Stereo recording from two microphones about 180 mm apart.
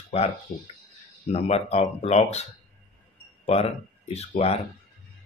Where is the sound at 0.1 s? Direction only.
40° left (ahead or behind).